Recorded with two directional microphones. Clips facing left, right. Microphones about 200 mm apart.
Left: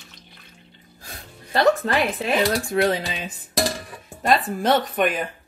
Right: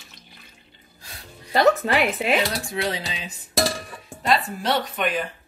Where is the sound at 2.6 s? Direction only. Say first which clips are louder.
Left 6 dB; 50° left (ahead or behind).